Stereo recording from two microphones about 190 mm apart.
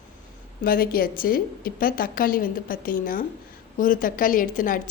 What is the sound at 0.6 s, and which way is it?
A woman's voice, 50° left (ahead or behind).